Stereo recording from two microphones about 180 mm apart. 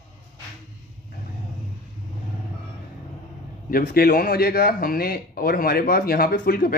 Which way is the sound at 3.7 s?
55° left (ahead or behind).